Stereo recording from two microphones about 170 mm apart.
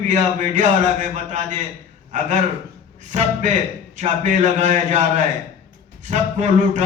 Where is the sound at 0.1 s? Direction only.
45° right (ahead or behind).